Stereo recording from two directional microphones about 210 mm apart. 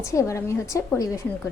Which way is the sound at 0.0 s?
15° left (ahead or behind).